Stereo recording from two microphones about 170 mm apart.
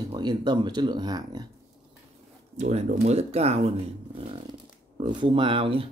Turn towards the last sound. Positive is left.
turn(degrees=-30)  # may be behind; listen again after turning